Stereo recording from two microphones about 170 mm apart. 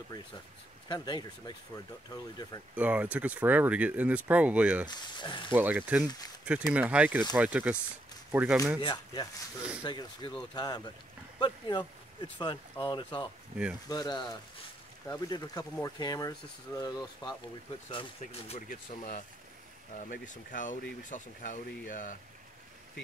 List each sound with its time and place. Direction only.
0.8 s speech: 25° left (ahead or behind)
2.7 s speech: 10° right (ahead or behind)
4.8 s speech: 25° left (ahead or behind)
5.5 s speech: 10° right (ahead or behind)
6.0 s speech: 20° left (ahead or behind)
6.4 s speech: 10° right (ahead or behind)
8.8 s speech: 25° left (ahead or behind)
18.2 s speech: 45° left (ahead or behind)